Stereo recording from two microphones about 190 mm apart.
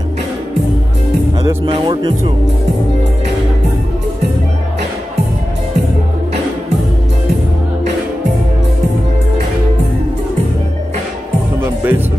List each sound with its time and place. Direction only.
1.7 s music: 25° right (ahead or behind)
11.6 s music: 10° right (ahead or behind)